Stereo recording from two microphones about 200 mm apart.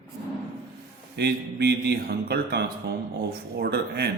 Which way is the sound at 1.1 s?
55° right (ahead or behind).